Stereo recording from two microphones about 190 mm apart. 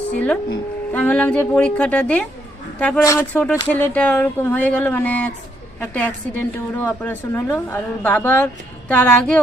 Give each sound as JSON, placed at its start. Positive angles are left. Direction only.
{"t": 0.1, "sound": "speech", "side_deg": 5}